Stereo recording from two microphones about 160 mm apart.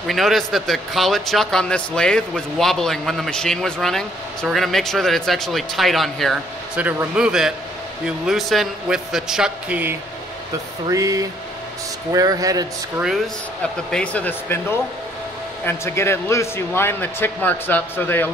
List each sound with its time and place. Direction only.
0.0 s a man's voice: centre (ahead or behind)
6.8 s a man's voice: 10° right (ahead or behind)
10.9 s a man's voice: 20° right (ahead or behind)
13.8 s speech: 5° left (ahead or behind)